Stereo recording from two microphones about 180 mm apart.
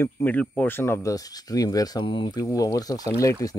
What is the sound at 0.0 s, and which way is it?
Speech, 10° left (ahead or behind).